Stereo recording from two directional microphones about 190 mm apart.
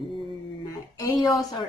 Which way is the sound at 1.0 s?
20° left (ahead or behind).